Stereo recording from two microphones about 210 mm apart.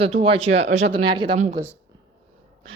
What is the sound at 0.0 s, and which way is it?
Speech, 25° right (ahead or behind).